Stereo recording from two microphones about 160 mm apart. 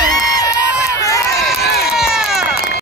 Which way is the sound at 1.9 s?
5° right (ahead or behind).